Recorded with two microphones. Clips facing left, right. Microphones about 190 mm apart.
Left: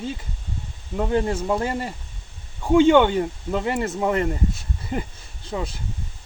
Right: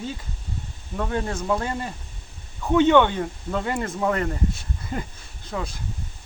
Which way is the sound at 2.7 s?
30° left (ahead or behind).